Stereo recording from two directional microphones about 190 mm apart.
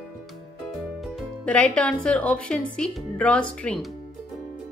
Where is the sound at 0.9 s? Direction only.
Centre (ahead or behind).